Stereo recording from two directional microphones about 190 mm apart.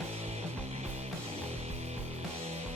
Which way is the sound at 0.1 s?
35° right (ahead or behind).